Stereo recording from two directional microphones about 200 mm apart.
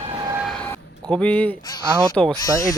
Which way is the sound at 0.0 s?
25° right (ahead or behind).